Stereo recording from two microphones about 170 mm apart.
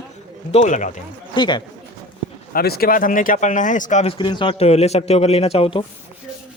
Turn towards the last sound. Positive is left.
turn(degrees=35)  # may be behind; listen again after turning